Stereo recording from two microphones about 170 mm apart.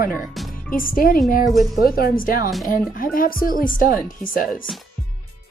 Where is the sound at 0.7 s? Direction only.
55° left (ahead or behind).